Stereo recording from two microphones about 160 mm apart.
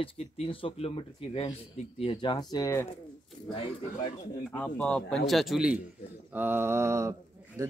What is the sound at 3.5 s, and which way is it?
Speech, 35° left (ahead or behind).